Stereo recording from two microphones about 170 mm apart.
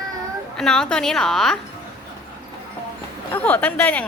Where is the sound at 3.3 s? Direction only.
10° left (ahead or behind).